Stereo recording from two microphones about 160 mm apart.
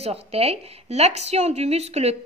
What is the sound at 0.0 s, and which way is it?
A woman's voice, 40° right (ahead or behind).